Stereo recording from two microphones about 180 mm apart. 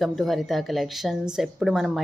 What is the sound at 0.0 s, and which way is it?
A woman's voice, centre (ahead or behind).